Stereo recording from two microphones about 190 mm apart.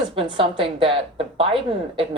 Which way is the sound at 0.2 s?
30° right (ahead or behind).